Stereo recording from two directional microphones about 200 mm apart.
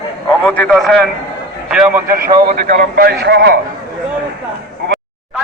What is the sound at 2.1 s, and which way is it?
A man's voice, 50° right (ahead or behind).